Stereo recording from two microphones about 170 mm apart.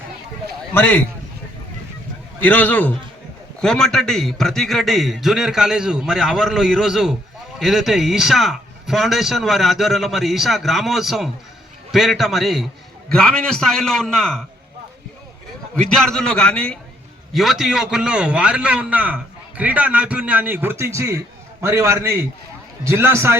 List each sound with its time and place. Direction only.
0.7 s a man's voice: 10° left (ahead or behind)
2.4 s a man's voice: 10° left (ahead or behind)
15.7 s a man's voice: 5° left (ahead or behind); by 23.4 s 15° right (ahead or behind)